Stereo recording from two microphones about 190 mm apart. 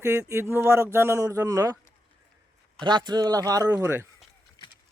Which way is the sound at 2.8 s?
25° right (ahead or behind).